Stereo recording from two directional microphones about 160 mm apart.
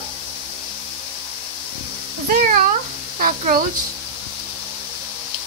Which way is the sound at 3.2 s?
60° right (ahead or behind).